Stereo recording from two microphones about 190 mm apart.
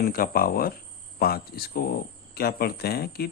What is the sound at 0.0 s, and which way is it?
Speech, 50° left (ahead or behind).